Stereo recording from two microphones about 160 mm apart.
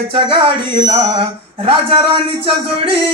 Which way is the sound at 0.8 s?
35° right (ahead or behind).